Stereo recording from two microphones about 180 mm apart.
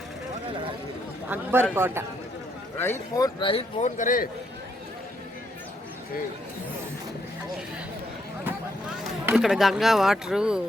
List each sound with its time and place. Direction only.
1.3 s a man's voice: 10° right (ahead or behind)
2.7 s speech: 15° left (ahead or behind)
3.5 s a man's voice: 40° left (ahead or behind)
9.2 s speech: 5° right (ahead or behind)